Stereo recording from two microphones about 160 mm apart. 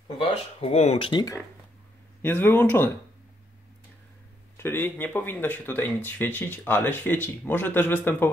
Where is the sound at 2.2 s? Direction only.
10° left (ahead or behind).